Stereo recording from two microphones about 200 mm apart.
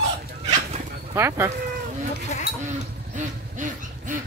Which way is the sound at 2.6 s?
40° right (ahead or behind).